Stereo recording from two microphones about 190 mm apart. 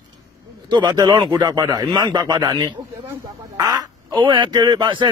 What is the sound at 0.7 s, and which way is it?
Speech, 20° right (ahead or behind).